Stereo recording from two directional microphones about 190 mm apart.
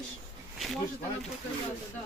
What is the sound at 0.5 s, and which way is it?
Speech, centre (ahead or behind).